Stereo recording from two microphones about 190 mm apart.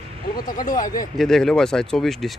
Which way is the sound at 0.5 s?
45° left (ahead or behind).